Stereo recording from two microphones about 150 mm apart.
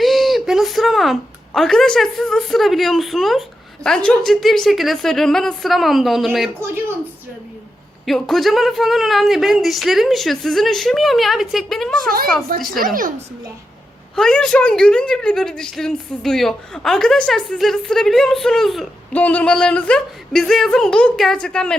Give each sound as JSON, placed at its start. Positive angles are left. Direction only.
{"t": 0.0, "sound": "a woman's voice", "side_deg": 0}
{"t": 8.0, "sound": "a woman's voice", "side_deg": 0}
{"t": 12.0, "sound": "speech", "side_deg": -75}
{"t": 12.8, "sound": "a woman's voice", "side_deg": -65}
{"t": 14.2, "sound": "a woman's voice", "side_deg": 5}